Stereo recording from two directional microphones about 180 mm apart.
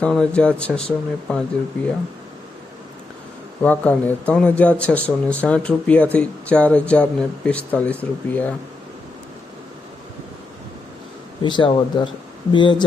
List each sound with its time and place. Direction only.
0.0 s speech: 5° left (ahead or behind)
3.6 s speech: 10° left (ahead or behind)
11.4 s speech: 25° left (ahead or behind)